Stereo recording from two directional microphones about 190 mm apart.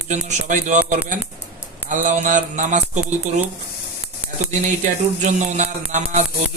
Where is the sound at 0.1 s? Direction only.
40° right (ahead or behind).